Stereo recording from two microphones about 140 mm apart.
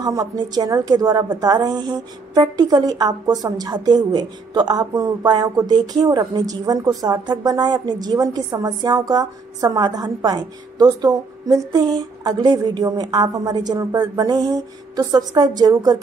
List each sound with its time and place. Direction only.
0.0 s a woman's voice: 30° right (ahead or behind)